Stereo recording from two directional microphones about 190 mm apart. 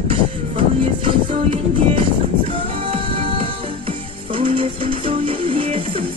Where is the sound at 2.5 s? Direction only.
30° right (ahead or behind).